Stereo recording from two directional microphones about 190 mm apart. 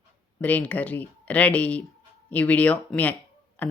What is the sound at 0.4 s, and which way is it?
Speech, 10° left (ahead or behind).